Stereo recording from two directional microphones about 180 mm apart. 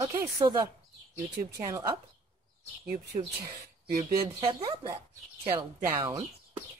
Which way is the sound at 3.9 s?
30° right (ahead or behind).